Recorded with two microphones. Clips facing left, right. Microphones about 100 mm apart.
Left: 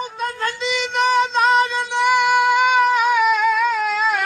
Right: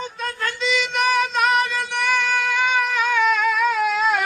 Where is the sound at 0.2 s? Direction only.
20° left (ahead or behind).